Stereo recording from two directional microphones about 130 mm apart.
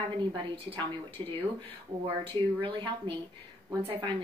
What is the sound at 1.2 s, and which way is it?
A woman's voice, 40° right (ahead or behind).